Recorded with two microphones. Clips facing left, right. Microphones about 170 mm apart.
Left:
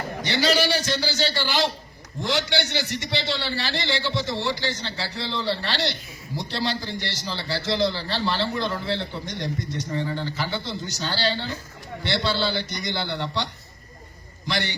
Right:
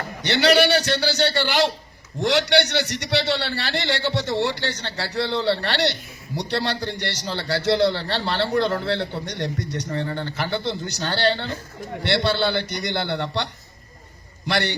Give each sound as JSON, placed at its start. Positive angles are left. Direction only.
{"t": 0.2, "sound": "a man's voice", "side_deg": -65}